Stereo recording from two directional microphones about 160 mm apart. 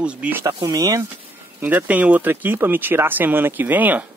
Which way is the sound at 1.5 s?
10° right (ahead or behind).